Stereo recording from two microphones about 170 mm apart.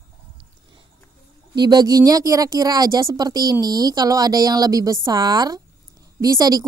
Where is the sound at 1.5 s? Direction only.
25° right (ahead or behind).